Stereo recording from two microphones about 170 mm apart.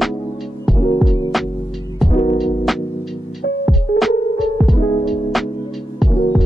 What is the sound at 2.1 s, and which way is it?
Music, 40° left (ahead or behind).